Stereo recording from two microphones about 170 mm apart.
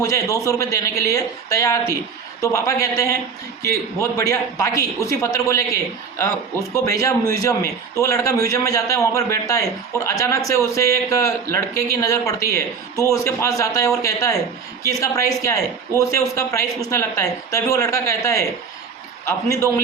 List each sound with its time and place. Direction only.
0.0 s a man's voice: 20° left (ahead or behind)